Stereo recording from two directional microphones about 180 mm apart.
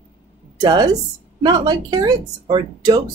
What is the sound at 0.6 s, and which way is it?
Speech, 20° right (ahead or behind).